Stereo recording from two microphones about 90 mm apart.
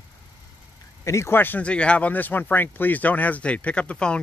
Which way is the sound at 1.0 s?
30° left (ahead or behind).